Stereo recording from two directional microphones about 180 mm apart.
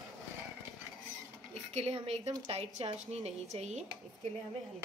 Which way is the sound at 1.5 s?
35° right (ahead or behind).